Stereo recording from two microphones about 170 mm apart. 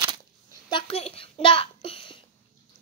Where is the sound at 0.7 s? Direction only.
35° left (ahead or behind).